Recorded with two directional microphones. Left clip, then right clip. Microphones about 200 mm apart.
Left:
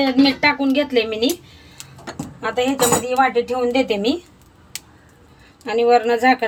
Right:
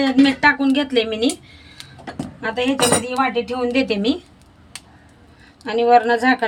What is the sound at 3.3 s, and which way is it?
Speech, 20° right (ahead or behind).